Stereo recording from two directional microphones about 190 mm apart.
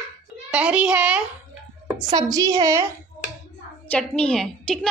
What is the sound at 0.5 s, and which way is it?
Speech, 5° right (ahead or behind).